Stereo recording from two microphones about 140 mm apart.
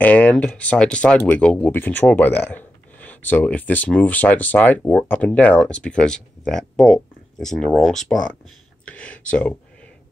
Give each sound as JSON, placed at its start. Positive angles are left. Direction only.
{"t": 0.0, "sound": "speech", "side_deg": 10}
{"t": 8.8, "sound": "a sound", "side_deg": 10}
{"t": 9.3, "sound": "speech", "side_deg": 10}